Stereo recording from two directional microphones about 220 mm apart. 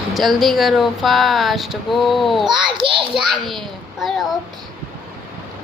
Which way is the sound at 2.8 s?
25° right (ahead or behind).